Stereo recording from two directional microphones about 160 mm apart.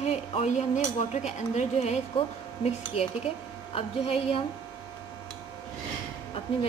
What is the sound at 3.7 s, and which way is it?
Speech, 35° left (ahead or behind).